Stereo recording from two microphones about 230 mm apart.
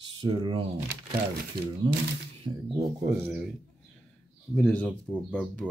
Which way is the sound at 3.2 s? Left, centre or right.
Centre.